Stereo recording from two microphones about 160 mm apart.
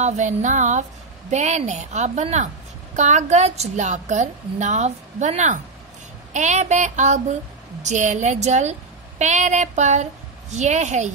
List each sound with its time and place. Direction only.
0.0 s a woman's voice: 50° right (ahead or behind)